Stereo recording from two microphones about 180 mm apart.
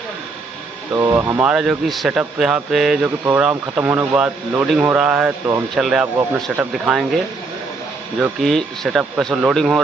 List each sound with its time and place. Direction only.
0.9 s speech: 15° right (ahead or behind)
1.5 s speech: centre (ahead or behind)
8.2 s speech: centre (ahead or behind)